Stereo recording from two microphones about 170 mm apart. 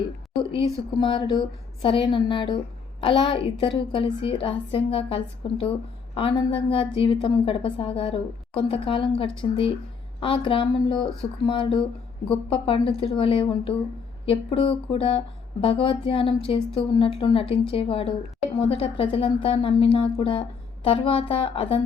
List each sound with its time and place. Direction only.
0.5 s a woman's voice: 30° left (ahead or behind)